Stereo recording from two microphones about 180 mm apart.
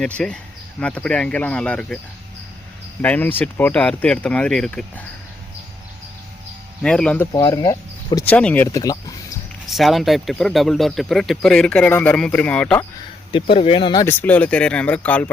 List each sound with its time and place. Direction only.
0.0 s speech: 5° left (ahead or behind)
3.0 s speech: 10° left (ahead or behind)
6.8 s speech: 5° left (ahead or behind)
7.3 s speech: 20° left (ahead or behind)
8.2 s speech: 5° left (ahead or behind)
9.6 s speech: centre (ahead or behind)
13.3 s speech: 30° left (ahead or behind); by 15.3 s 10° left (ahead or behind)